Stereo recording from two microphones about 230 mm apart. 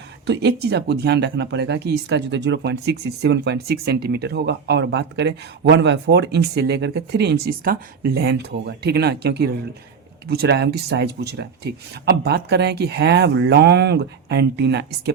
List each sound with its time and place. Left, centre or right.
0.3 s speech: right